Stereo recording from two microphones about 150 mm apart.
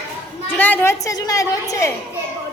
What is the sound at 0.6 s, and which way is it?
A woman's voice, 10° left (ahead or behind).